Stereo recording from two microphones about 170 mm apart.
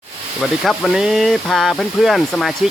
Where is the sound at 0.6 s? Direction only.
Centre (ahead or behind).